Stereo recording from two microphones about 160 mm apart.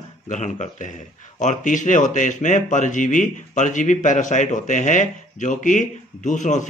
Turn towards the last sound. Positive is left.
turn(degrees=50)  # may be behind; listen again after turning